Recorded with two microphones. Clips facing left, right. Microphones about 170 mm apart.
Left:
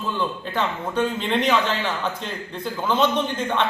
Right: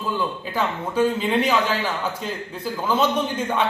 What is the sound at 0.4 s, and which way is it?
A man's voice, 5° right (ahead or behind).